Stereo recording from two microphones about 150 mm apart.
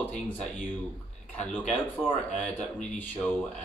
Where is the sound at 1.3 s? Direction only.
10° left (ahead or behind).